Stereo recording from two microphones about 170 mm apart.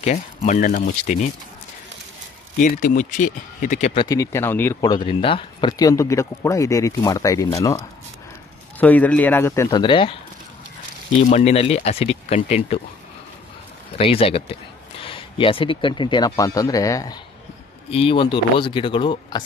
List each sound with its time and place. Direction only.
0.0 s speech: 40° left (ahead or behind)
2.6 s speech: 50° left (ahead or behind)
3.9 s speech: 25° left (ahead or behind)
4.8 s speech: 25° left (ahead or behind)
8.7 s speech: 10° left (ahead or behind); by 10.1 s 30° left (ahead or behind)
11.2 s speech: 40° left (ahead or behind)
13.9 s speech: 35° left (ahead or behind)
17.8 s speech: 35° left (ahead or behind)